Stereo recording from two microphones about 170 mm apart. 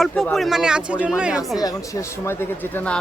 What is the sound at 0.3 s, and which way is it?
Speech, centre (ahead or behind).